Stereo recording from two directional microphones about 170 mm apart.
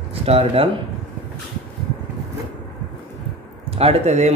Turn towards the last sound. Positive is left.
turn(degrees=-40)  # may be behind; listen again after turning